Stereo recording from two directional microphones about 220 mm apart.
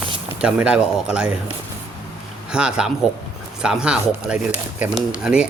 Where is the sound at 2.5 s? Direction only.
5° right (ahead or behind).